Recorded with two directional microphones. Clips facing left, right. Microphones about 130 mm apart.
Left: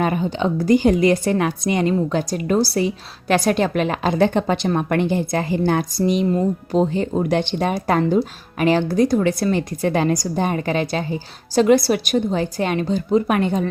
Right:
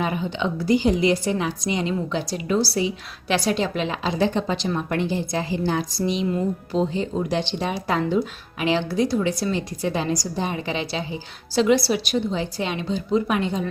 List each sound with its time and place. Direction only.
0.0 s a woman's voice: 45° left (ahead or behind)